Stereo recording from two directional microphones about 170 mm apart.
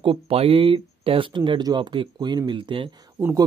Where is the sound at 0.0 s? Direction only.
35° right (ahead or behind).